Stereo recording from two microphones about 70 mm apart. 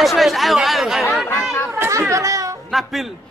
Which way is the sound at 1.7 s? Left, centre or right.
Right.